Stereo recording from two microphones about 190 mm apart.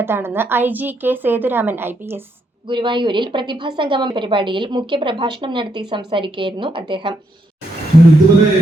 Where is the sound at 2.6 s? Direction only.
25° right (ahead or behind).